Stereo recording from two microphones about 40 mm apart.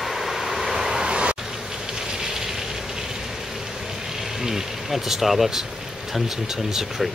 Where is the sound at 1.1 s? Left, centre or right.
Right.